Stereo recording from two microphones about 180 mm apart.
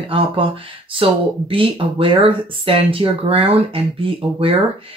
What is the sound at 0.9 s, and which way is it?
Speech, 30° right (ahead or behind).